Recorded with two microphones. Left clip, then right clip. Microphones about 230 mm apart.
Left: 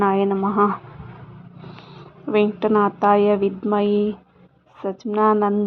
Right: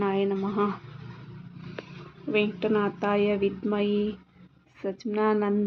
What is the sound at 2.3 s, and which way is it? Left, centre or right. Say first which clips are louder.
A woman's voice: left 7 dB; left.